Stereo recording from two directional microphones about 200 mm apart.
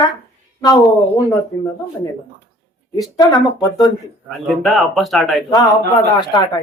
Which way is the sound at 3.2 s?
20° left (ahead or behind).